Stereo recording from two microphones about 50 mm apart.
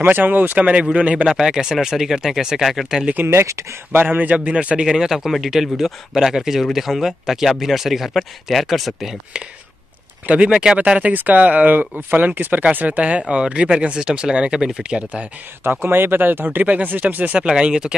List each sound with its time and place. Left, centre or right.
0.0 s speech: right
1.2 s speech: centre
3.3 s speech: right
3.9 s speech: right
4.3 s speech: right
4.8 s speech: centre
10.2 s speech: right
15.6 s speech: right
17.4 s speech: centre